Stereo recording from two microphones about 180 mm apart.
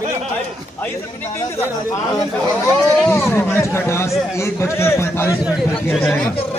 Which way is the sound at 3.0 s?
10° left (ahead or behind).